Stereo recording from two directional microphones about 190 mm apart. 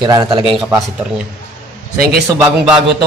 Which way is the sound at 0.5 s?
Centre (ahead or behind).